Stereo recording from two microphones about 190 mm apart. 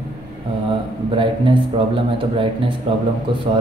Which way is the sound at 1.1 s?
25° right (ahead or behind).